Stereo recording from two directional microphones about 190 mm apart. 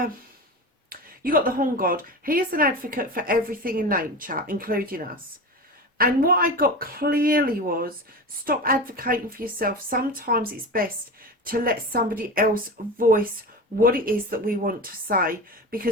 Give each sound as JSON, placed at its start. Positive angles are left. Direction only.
{"t": 0.9, "sound": "a woman's voice", "side_deg": -50}